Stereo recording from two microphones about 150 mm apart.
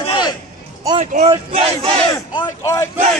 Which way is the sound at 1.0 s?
50° right (ahead or behind).